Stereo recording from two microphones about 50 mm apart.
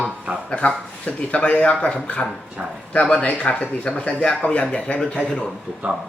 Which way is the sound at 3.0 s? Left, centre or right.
Left.